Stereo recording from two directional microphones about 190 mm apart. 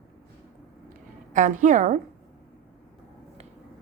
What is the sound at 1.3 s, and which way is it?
Speech, 40° right (ahead or behind).